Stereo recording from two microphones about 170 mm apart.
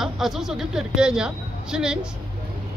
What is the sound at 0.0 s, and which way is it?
Speech, centre (ahead or behind).